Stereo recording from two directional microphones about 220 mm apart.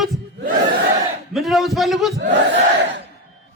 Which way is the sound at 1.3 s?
Centre (ahead or behind).